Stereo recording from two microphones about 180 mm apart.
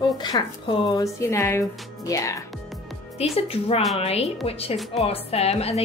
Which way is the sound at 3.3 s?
35° left (ahead or behind).